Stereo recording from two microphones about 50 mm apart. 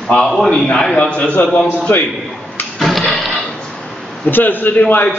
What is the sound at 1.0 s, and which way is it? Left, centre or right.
Speech, left.